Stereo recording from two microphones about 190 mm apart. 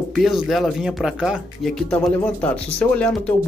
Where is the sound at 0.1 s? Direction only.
Centre (ahead or behind).